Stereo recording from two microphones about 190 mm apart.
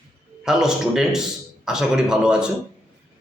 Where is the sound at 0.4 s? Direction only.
5° right (ahead or behind).